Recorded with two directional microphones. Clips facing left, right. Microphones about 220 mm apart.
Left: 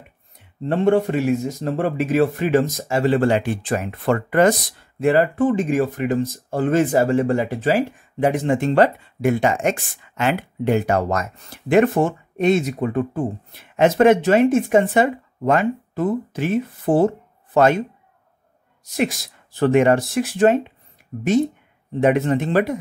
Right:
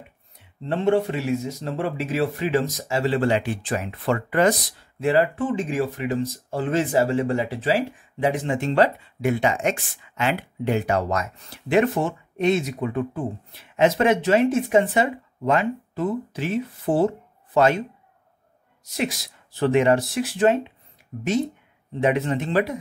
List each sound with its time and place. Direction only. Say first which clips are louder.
0.7 s speech: left 3 dB; 50° left (ahead or behind)
19.6 s speech: left 3 dB; 50° left (ahead or behind)
22.0 s speech: left 4 dB; 50° left (ahead or behind)